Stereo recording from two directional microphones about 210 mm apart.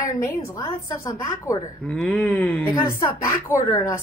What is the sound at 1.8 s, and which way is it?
Speech, 5° left (ahead or behind).